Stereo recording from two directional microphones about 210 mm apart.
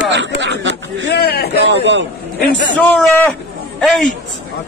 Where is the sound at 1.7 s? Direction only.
60° right (ahead or behind).